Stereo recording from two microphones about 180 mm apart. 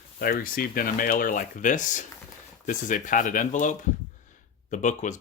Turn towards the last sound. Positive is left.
turn(degrees=45)  # may be behind; listen again after turning